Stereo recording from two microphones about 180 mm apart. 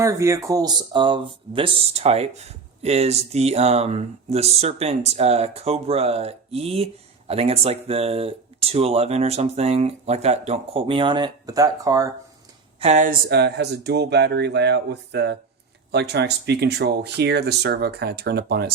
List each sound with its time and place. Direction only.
0.0 s speech: 15° right (ahead or behind)
12.8 s speech: 40° right (ahead or behind); by 18.7 s 65° right (ahead or behind)